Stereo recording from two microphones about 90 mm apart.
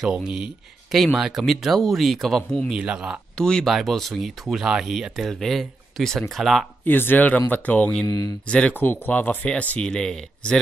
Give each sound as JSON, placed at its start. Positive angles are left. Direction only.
{"t": 0.0, "sound": "speech", "side_deg": -10}
{"t": 2.7, "sound": "speech", "side_deg": -10}
{"t": 3.3, "sound": "speech", "side_deg": 10}
{"t": 6.8, "sound": "speech", "side_deg": 20}